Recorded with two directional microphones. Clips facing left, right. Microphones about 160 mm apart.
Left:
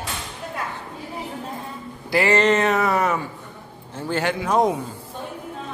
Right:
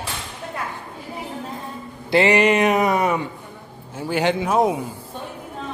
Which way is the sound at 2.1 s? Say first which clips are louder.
Right 3 dB; 20° right (ahead or behind).